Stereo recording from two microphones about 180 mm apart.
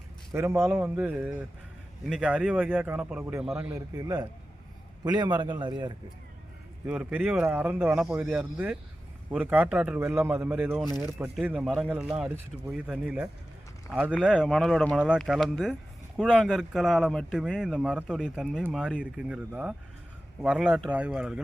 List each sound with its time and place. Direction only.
0.3 s a man's voice: 15° right (ahead or behind)
6.8 s a man's voice: 5° right (ahead or behind)